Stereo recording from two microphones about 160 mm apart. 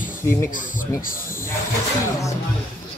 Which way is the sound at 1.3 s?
15° left (ahead or behind).